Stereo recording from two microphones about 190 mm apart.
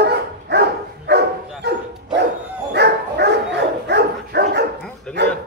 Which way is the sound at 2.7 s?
60° right (ahead or behind).